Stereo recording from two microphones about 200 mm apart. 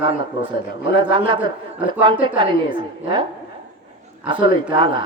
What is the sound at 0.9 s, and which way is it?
A woman's voice, 25° right (ahead or behind).